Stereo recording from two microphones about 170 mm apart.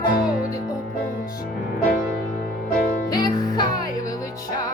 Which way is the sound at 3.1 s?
25° left (ahead or behind).